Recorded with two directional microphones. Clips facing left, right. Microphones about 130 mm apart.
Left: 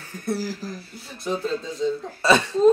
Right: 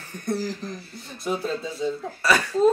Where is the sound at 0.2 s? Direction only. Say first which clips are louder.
Even; 5° left (ahead or behind).